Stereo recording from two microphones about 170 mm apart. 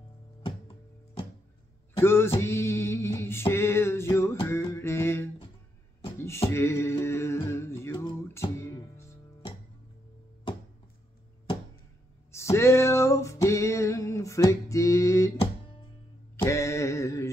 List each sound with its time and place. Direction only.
2.0 s a sound: 15° left (ahead or behind)
6.5 s music: 15° left (ahead or behind)
12.3 s music: 15° left (ahead or behind)
16.4 s mantra: 15° left (ahead or behind)